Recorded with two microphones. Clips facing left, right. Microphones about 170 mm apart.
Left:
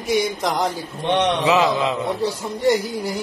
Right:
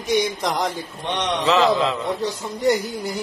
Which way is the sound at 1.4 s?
15° left (ahead or behind).